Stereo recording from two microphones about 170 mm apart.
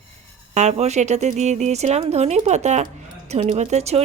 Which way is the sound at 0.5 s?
40° right (ahead or behind).